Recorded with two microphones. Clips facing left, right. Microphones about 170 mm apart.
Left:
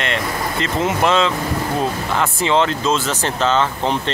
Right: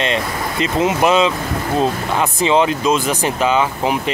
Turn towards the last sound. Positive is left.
turn(degrees=-10)  # may be behind; listen again after turning